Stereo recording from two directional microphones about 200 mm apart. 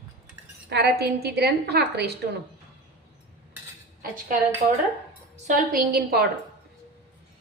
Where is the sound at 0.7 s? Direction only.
55° right (ahead or behind).